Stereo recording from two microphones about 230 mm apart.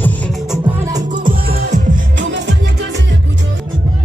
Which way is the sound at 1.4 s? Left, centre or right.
Right.